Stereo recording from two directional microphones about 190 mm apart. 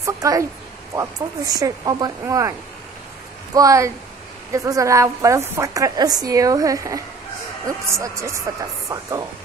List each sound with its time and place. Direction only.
0.0 s a woman's voice: 15° right (ahead or behind)
3.5 s a woman's voice: 15° right (ahead or behind)